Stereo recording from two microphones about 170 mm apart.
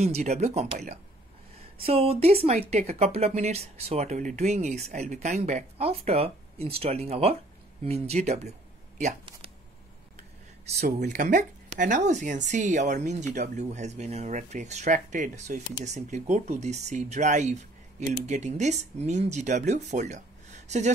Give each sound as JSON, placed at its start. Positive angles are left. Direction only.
{"t": 0.0, "sound": "speech", "side_deg": -40}
{"t": 10.6, "sound": "a sound", "side_deg": -40}
{"t": 11.1, "sound": "speech", "side_deg": -50}